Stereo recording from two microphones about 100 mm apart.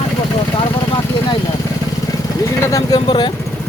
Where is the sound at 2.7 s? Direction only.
45° left (ahead or behind).